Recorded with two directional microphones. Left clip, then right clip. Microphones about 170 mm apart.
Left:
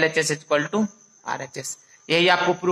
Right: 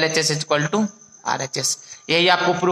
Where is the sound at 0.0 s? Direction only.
25° right (ahead or behind).